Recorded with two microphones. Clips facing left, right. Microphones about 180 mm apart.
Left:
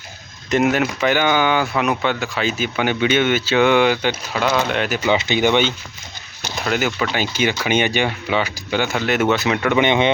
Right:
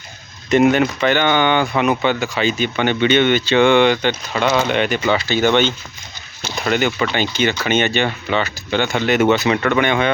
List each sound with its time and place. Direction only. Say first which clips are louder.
0.5 s speech: right 4 dB; 5° left (ahead or behind)
5.0 s speech: left 2 dB; 20° left (ahead or behind); by 9.7 s centre (ahead or behind)
9.7 s speech: left 1 dB; 20° left (ahead or behind)